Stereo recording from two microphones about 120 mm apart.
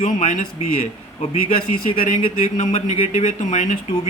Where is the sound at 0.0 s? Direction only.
85° left.